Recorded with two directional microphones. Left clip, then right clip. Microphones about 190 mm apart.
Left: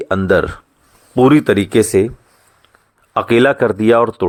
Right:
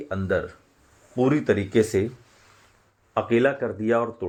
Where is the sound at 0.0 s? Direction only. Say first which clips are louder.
Left 12 dB; 40° left (ahead or behind).